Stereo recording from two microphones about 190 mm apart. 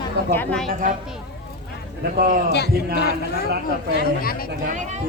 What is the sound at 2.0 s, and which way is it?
Speech, 50° right (ahead or behind).